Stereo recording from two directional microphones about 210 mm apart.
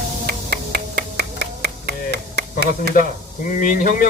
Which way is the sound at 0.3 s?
50° right (ahead or behind).